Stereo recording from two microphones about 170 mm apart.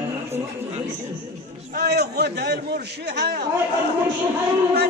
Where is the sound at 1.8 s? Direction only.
70° right (ahead or behind).